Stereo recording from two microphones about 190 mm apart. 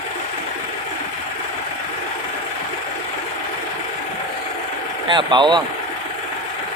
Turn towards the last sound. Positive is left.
turn(degrees=-25)  # may be behind; listen again after turning